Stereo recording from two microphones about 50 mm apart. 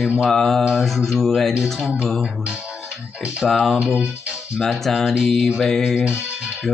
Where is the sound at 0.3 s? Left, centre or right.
Centre.